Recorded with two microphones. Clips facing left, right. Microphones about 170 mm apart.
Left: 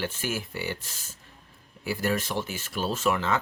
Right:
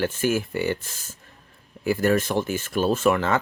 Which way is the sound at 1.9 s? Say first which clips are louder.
Right 7 dB; 50° right (ahead or behind).